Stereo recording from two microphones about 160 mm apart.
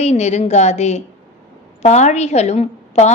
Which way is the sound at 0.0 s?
45° left (ahead or behind).